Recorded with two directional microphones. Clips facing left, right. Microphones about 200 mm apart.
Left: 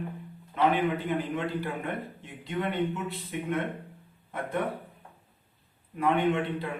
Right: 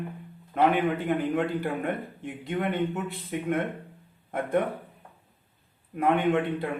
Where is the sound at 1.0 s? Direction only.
50° right (ahead or behind).